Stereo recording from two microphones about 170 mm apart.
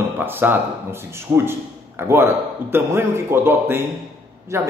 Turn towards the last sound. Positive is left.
turn(degrees=-15)  # may be behind; listen again after turning